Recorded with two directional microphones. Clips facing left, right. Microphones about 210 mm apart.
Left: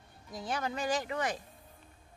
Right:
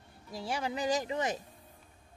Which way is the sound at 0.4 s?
10° right (ahead or behind).